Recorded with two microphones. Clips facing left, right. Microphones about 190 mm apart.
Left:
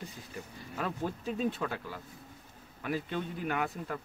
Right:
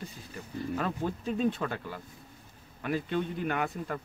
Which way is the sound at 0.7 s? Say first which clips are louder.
Right 1 dB; 5° left (ahead or behind).